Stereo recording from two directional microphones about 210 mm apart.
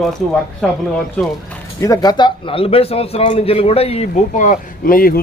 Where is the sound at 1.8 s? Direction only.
15° left (ahead or behind).